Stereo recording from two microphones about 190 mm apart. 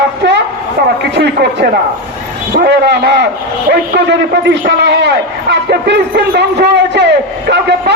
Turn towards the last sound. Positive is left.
turn(degrees=-65)  # may be behind; listen again after turning